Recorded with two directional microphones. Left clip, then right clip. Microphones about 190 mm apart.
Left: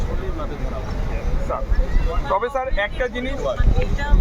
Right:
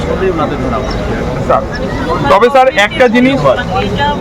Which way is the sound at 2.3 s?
30° right (ahead or behind).